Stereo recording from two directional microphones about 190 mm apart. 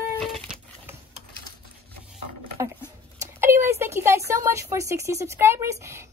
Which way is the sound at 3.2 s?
15° right (ahead or behind).